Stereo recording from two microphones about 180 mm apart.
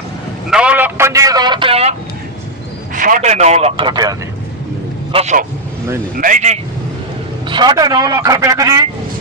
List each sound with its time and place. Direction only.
0.5 s a man's voice: 5° right (ahead or behind); by 2.0 s 35° right (ahead or behind)
3.0 s speech: 45° right (ahead or behind); by 4.2 s 20° right (ahead or behind)
5.1 s a man's voice: 40° right (ahead or behind)
7.4 s a man's voice: 25° right (ahead or behind)